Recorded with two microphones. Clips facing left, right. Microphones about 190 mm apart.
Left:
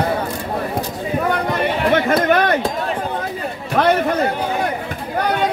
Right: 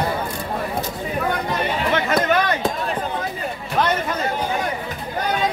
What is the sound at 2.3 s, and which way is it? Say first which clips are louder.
Speech: left 5 dB; 55° left (ahead or behind).